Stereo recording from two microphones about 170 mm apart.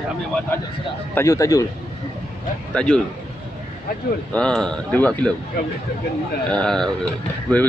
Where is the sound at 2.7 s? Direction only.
5° left (ahead or behind).